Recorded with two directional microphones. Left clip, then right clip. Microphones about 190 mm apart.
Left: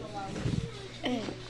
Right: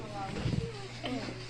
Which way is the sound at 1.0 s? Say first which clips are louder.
Left 5 dB; 30° left (ahead or behind).